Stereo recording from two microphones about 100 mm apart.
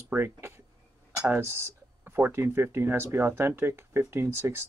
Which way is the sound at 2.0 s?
20° right (ahead or behind).